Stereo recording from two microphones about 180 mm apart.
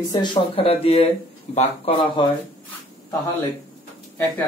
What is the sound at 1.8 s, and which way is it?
Speech, 25° left (ahead or behind).